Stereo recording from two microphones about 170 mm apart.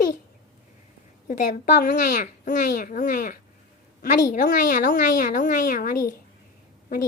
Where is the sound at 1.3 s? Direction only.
50° left (ahead or behind).